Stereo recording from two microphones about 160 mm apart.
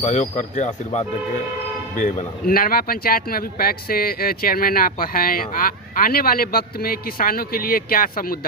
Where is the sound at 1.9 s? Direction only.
55° left (ahead or behind).